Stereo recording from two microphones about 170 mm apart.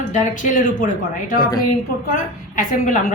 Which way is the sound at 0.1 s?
50° left (ahead or behind).